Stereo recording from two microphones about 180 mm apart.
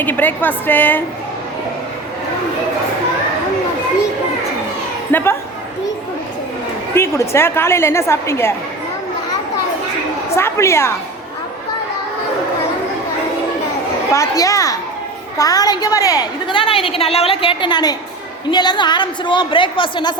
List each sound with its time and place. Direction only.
0.0 s a woman's voice: 10° left (ahead or behind)
5.1 s a woman's voice: 15° left (ahead or behind)
6.9 s a woman's voice: 15° left (ahead or behind)
10.3 s a woman's voice: 15° left (ahead or behind)
14.1 s a woman's voice: 20° left (ahead or behind)